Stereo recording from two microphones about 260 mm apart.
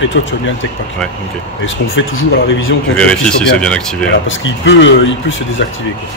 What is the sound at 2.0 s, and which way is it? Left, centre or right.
Speech, left.